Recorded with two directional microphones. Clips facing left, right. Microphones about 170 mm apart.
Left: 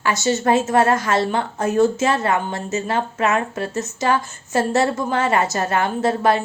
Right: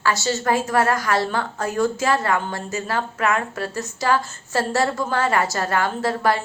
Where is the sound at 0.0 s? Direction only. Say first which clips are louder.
Left 3 dB; 20° left (ahead or behind).